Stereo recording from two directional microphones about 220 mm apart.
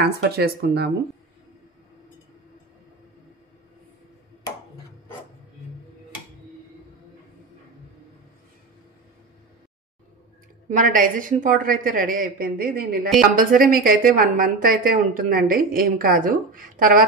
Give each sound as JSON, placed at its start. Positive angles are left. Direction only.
{"t": 0.0, "sound": "speech", "side_deg": -45}
{"t": 10.7, "sound": "a woman's voice", "side_deg": -35}